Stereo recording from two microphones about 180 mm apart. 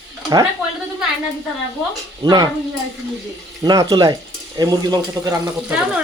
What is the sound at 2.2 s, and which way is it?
Speech, 20° right (ahead or behind).